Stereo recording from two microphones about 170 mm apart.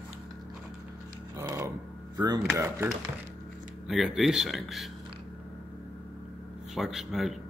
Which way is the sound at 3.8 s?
Centre (ahead or behind).